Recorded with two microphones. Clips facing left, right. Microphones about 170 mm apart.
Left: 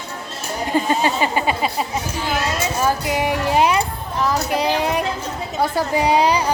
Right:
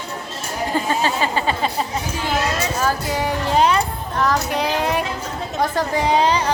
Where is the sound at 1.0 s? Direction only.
15° left (ahead or behind).